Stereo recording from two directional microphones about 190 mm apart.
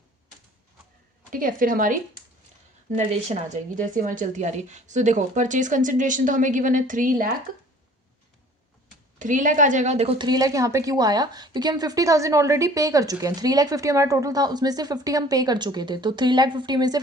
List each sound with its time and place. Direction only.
1.3 s speech: 45° right (ahead or behind)
2.9 s speech: 35° right (ahead or behind)
9.1 s a woman's voice: 40° right (ahead or behind); by 17.0 s 20° right (ahead or behind)